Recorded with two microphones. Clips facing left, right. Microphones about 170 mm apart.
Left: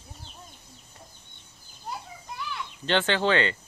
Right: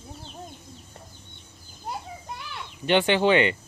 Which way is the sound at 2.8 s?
15° right (ahead or behind).